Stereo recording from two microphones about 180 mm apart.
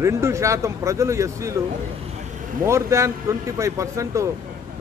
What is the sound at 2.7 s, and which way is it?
Speech, 15° right (ahead or behind).